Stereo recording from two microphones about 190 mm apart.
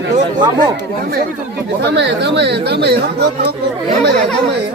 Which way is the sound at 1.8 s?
65° right (ahead or behind).